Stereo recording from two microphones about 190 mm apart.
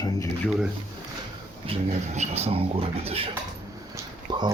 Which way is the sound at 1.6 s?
35° right (ahead or behind).